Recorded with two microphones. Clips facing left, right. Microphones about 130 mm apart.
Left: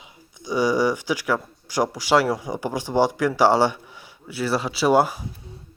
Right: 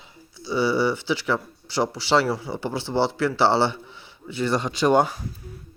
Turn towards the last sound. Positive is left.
turn(degrees=5)  # may be behind; listen again after turning